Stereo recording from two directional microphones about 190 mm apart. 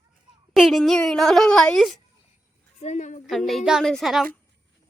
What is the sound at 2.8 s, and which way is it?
Speech, 40° left (ahead or behind).